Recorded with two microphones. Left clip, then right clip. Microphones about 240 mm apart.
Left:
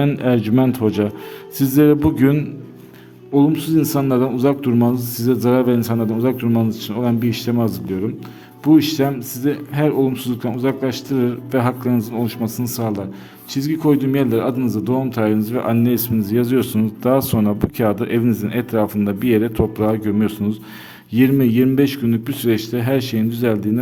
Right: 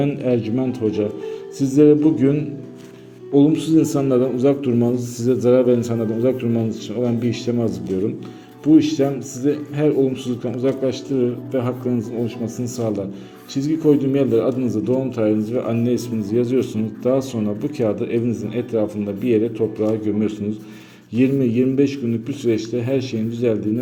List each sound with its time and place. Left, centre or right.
0.2 s a man's voice: left
3.4 s a man's voice: left